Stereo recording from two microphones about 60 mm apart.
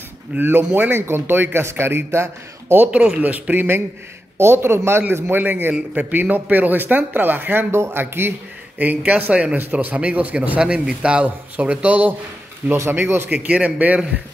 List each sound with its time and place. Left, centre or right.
0.4 s a man's voice: right
2.9 s a man's voice: centre; by 5.4 s right
5.4 s a man's voice: right
12.9 s a man's voice: right
13.3 s a man's voice: right